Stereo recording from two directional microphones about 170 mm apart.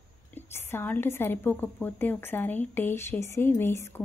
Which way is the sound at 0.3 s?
15° left (ahead or behind).